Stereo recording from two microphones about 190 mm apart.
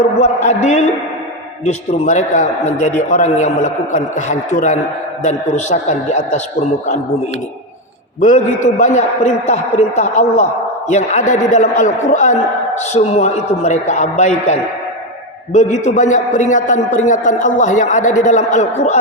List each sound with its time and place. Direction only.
0.2 s a man's voice: 40° left (ahead or behind)
8.2 s a man's voice: 40° left (ahead or behind)